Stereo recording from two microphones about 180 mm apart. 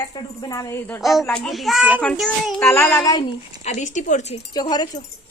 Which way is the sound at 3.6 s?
40° left (ahead or behind).